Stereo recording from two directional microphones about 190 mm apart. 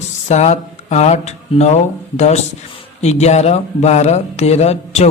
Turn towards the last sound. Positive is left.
turn(degrees=35)  # may be behind; listen again after turning